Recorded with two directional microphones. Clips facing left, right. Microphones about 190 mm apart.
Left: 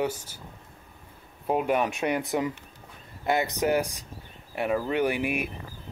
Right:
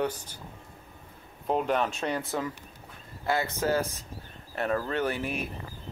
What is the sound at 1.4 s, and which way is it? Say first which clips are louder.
Speech: left 2 dB; 10° left (ahead or behind).